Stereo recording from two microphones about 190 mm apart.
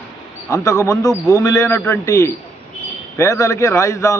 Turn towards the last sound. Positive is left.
turn(degrees=15)  # may be behind; listen again after turning